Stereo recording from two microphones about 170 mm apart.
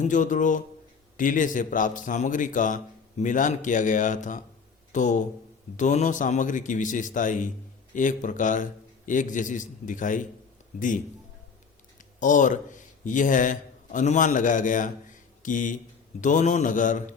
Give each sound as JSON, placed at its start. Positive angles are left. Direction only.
{"t": 0.0, "sound": "a man's voice", "side_deg": 50}
{"t": 12.2, "sound": "a man's voice", "side_deg": 50}